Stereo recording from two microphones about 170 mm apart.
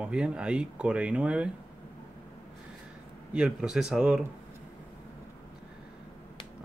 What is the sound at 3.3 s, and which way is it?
Speech, 5° right (ahead or behind).